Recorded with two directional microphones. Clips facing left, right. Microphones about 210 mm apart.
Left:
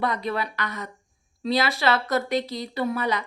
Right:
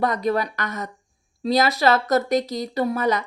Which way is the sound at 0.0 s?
45° right (ahead or behind).